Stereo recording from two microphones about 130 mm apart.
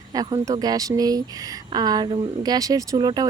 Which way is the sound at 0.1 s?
30° right (ahead or behind).